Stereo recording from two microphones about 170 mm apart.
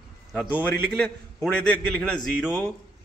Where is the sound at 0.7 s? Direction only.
70° right (ahead or behind).